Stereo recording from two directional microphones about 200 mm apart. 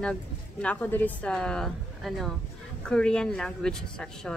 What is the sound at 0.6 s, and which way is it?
Speech, 10° left (ahead or behind).